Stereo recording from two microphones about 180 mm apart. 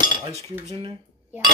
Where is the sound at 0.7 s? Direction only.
30° right (ahead or behind).